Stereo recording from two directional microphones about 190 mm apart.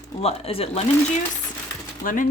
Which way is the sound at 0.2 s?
30° left (ahead or behind).